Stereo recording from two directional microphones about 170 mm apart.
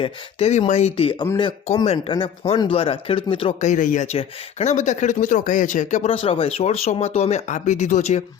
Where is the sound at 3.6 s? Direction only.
45° left (ahead or behind).